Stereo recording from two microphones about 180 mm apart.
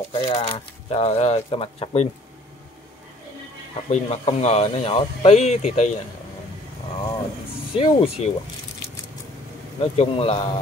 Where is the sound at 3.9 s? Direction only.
35° left (ahead or behind).